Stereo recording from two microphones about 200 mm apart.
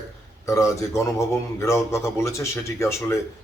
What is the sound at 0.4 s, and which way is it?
A man's voice, 15° left (ahead or behind).